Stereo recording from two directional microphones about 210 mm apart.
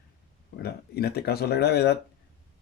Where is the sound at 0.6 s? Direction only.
50° left (ahead or behind).